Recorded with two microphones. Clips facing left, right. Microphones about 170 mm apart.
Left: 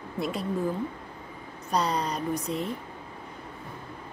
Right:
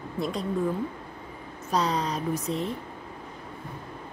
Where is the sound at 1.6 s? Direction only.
Centre (ahead or behind).